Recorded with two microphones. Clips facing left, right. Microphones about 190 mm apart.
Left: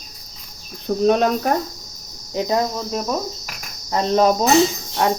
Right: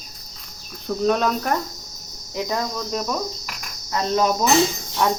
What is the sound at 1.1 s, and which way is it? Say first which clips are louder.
Cricket: left 3 dB; 45° left (ahead or behind).